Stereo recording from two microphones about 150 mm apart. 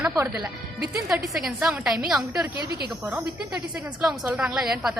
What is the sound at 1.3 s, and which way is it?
A woman's voice, centre (ahead or behind).